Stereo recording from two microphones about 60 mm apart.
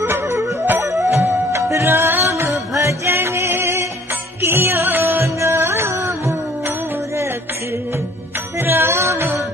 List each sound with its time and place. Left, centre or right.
0.0 s music: right
1.5 s music: right
2.3 s music: right
3.2 s music: right
8.5 s music: right